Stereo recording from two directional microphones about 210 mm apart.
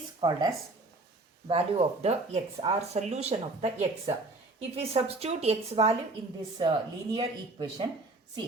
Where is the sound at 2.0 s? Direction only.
30° right (ahead or behind).